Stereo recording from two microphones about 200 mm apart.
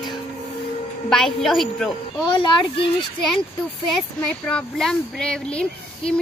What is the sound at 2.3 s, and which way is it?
Speech, 25° left (ahead or behind).